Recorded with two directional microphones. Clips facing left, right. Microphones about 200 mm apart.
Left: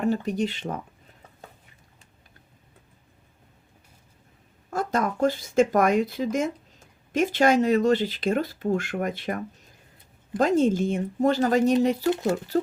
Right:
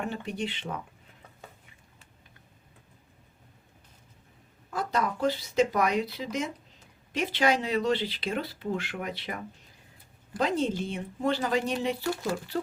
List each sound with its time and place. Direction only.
0.0 s speech: 40° left (ahead or behind)
4.7 s speech: 45° left (ahead or behind)